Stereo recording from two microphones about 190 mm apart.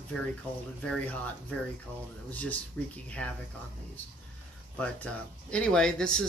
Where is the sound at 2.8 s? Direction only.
10° left (ahead or behind).